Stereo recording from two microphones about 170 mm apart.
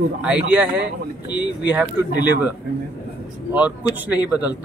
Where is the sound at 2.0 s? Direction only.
15° right (ahead or behind).